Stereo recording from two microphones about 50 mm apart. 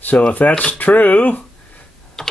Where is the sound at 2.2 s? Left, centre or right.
Centre.